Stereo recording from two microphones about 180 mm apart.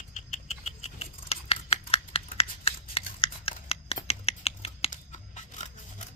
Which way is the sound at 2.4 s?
30° left (ahead or behind).